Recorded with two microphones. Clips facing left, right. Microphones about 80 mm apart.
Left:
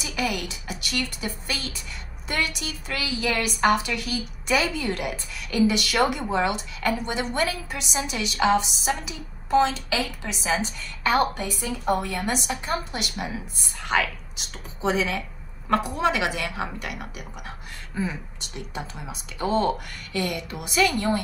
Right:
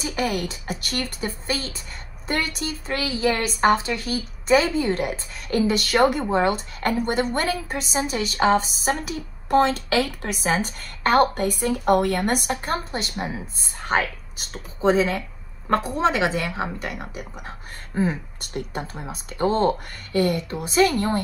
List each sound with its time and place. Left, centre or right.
0.0 s a woman's voice: right